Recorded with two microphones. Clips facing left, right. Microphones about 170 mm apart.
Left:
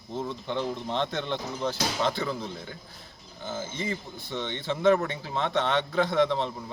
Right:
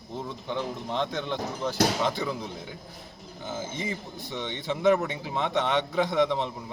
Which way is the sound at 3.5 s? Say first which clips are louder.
Left 1 dB; 15° right (ahead or behind).